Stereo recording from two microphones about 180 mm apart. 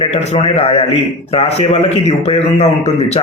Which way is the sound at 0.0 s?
35° left (ahead or behind).